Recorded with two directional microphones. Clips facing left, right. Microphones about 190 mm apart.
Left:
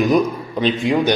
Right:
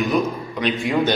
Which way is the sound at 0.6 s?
25° left (ahead or behind).